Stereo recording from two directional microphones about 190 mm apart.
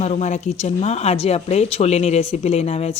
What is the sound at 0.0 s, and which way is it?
Speech, 35° left (ahead or behind).